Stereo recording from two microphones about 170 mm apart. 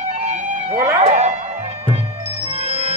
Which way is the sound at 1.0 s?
40° right (ahead or behind).